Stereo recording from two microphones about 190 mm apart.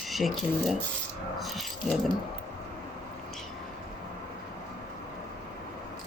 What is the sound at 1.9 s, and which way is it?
Speech, centre (ahead or behind).